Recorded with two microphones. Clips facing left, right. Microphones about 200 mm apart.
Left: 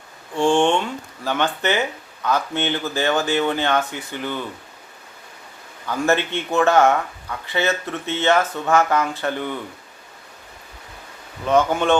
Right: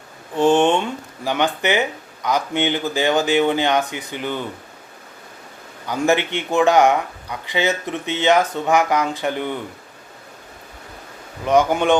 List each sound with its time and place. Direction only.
0.3 s speech: 20° right (ahead or behind)
5.9 s speech: 15° right (ahead or behind)
11.4 s speech: 15° right (ahead or behind)